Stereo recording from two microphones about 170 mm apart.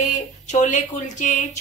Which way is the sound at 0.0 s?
45° left (ahead or behind).